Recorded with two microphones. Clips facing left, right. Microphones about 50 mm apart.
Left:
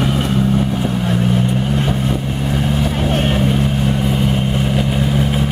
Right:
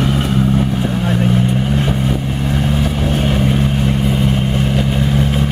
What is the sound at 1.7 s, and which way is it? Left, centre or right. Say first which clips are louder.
Vehicle: right 1 dB; centre.